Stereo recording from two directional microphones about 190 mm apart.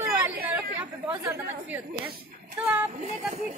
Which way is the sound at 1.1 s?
15° right (ahead or behind).